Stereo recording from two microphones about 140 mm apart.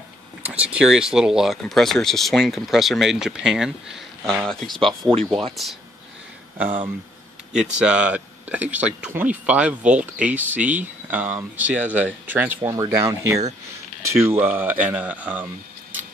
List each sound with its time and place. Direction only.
0.4 s speech: 10° right (ahead or behind)
7.5 s speech: 5° right (ahead or behind)